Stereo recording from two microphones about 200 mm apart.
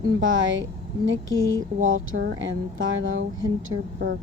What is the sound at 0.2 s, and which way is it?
A woman's voice, 75° right (ahead or behind).